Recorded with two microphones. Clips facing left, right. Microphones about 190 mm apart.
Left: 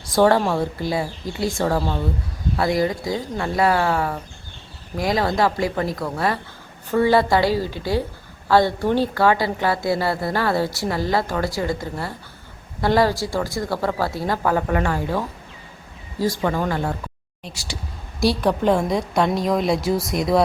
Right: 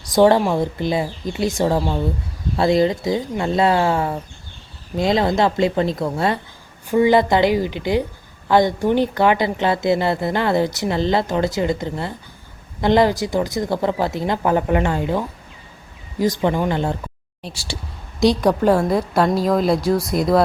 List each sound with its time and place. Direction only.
0.0 s a woman's voice: 20° right (ahead or behind)
18.4 s a woman's voice: 10° right (ahead or behind)